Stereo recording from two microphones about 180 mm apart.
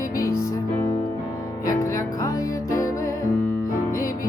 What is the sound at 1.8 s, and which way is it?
Music, 20° left (ahead or behind).